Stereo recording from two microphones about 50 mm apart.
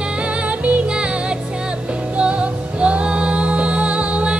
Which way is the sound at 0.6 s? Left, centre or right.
Right.